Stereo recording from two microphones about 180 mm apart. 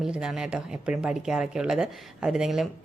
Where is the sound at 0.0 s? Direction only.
5° right (ahead or behind).